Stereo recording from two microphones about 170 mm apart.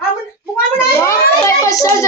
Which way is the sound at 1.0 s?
15° left (ahead or behind).